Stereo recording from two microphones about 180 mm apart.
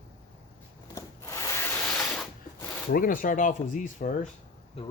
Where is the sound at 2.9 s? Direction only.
50° left (ahead or behind).